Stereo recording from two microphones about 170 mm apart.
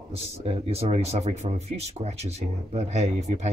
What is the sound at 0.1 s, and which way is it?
Speech, 35° right (ahead or behind).